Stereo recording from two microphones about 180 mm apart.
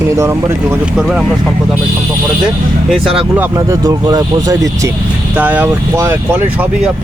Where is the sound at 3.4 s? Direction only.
20° right (ahead or behind).